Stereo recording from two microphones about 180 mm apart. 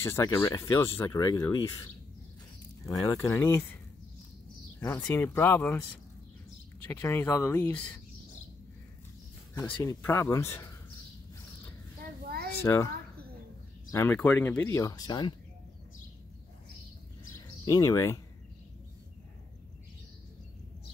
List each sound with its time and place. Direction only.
0.0 s speech: 15° left (ahead or behind)
2.9 s speech: 20° left (ahead or behind)
4.7 s speech: 10° left (ahead or behind)
6.9 s speech: 15° left (ahead or behind)
10.0 s speech: 15° left (ahead or behind)
12.6 s speech: 15° left (ahead or behind)
17.6 s speech: 20° left (ahead or behind)